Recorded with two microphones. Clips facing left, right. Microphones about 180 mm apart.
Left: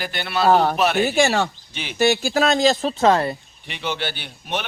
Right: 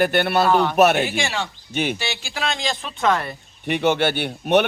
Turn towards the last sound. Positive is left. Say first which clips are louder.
# right 11 dB
turn(degrees=-60)  # may be behind; listen again after turning